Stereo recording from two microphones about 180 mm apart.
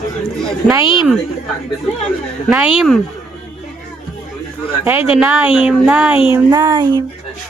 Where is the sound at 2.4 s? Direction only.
10° right (ahead or behind).